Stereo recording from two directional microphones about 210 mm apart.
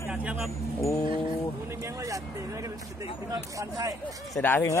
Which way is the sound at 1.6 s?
15° right (ahead or behind).